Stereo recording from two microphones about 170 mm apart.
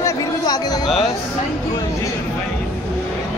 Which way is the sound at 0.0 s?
25° left (ahead or behind).